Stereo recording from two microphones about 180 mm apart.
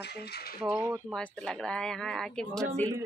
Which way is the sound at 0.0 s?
65° left (ahead or behind).